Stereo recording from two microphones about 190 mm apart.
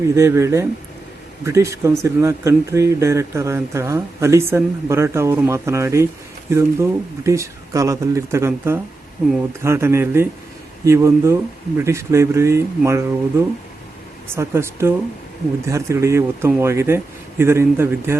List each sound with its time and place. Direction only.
0.1 s speech: 15° right (ahead or behind)
14.3 s speech: 15° right (ahead or behind)